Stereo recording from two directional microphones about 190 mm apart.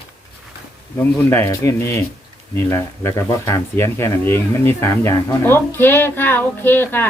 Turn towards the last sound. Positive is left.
turn(degrees=10)  # may be behind; listen again after turning